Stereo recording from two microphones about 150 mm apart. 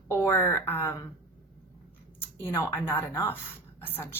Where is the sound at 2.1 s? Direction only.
15° left (ahead or behind).